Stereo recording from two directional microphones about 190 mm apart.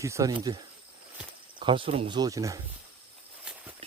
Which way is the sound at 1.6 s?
25° right (ahead or behind).